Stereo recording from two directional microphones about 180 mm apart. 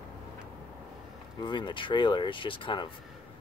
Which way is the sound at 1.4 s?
25° left (ahead or behind).